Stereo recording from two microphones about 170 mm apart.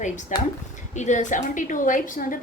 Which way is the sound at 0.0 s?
45° left (ahead or behind).